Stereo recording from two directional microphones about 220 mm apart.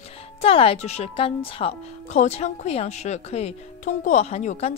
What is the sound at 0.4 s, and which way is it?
Speech, 25° left (ahead or behind).